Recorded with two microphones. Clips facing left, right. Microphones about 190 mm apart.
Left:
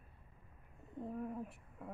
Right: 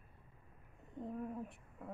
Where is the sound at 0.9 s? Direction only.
Centre (ahead or behind).